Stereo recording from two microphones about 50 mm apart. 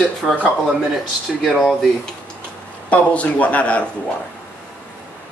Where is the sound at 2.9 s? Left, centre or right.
Left.